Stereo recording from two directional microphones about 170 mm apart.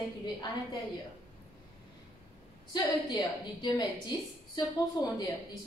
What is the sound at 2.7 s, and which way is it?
A woman's voice, 25° left (ahead or behind).